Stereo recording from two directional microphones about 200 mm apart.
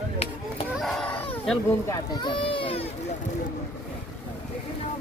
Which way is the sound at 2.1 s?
25° left (ahead or behind).